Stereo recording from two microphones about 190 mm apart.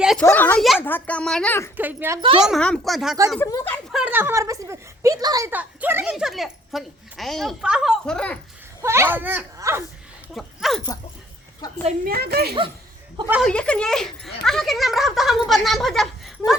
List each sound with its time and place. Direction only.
0.2 s a sound: 10° left (ahead or behind)
0.8 s speech: 10° left (ahead or behind)
1.7 s a woman's voice: 10° right (ahead or behind)
2.4 s speech: centre (ahead or behind)
3.4 s speech: 15° left (ahead or behind)
3.9 s speech: 10° right (ahead or behind)
8.8 s a sound: 15° right (ahead or behind)
10.3 s dog: centre (ahead or behind)
12.0 s a woman's voice: 55° right (ahead or behind)
13.4 s speech: 5° left (ahead or behind)